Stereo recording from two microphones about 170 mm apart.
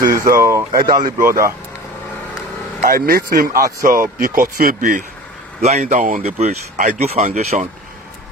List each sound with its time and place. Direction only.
0.0 s speech: 20° right (ahead or behind)
2.8 s speech: 60° right (ahead or behind)
3.4 s speech: 20° right (ahead or behind)
4.2 s speech: 55° right (ahead or behind)
5.6 s speech: 45° right (ahead or behind)